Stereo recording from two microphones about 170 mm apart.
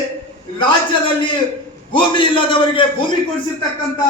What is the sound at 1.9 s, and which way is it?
A man's voice, 30° left (ahead or behind).